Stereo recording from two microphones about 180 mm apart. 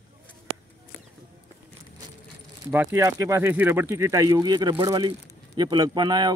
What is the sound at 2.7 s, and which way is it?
A man's voice, 10° right (ahead or behind).